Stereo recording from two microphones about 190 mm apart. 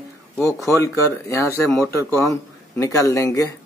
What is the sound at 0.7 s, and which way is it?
Speech, 15° left (ahead or behind).